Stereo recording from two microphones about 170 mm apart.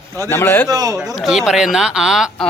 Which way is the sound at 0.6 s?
20° right (ahead or behind).